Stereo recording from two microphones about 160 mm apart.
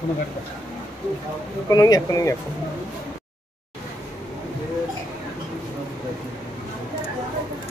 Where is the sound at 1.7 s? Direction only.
20° left (ahead or behind).